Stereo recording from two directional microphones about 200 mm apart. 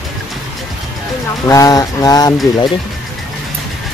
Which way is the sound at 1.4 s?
15° left (ahead or behind).